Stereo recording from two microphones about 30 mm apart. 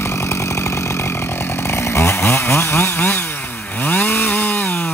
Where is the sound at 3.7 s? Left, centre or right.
Left.